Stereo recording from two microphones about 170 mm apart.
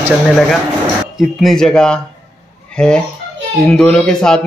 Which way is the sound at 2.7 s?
5° left (ahead or behind).